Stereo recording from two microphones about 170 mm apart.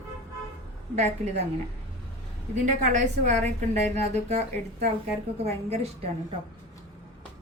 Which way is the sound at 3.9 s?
40° right (ahead or behind).